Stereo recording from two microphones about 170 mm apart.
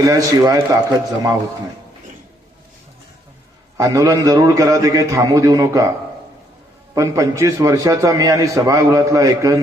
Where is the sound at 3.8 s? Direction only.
20° right (ahead or behind).